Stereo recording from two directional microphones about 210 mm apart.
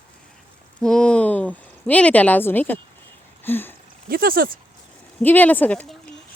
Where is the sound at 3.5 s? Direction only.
10° left (ahead or behind).